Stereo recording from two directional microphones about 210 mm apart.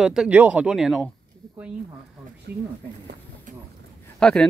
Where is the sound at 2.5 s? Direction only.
50° right (ahead or behind).